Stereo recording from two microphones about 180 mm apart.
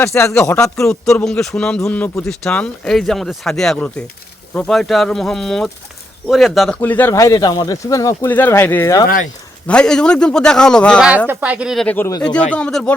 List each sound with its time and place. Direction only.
0.0 s speech: 15° left (ahead or behind)
1.2 s a man's voice: 5° left (ahead or behind)
9.6 s a man's voice: 5° left (ahead or behind)
11.3 s a man's voice: 10° right (ahead or behind)